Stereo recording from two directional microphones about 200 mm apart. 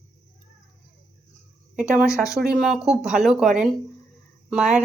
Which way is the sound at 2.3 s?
Centre (ahead or behind).